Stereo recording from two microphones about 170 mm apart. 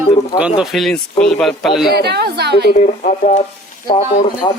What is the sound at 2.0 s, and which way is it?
Speech, 75° right (ahead or behind).